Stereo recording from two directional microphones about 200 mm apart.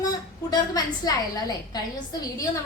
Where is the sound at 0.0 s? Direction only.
20° left (ahead or behind).